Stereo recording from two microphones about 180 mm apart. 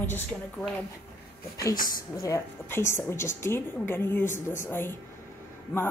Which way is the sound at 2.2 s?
15° left (ahead or behind).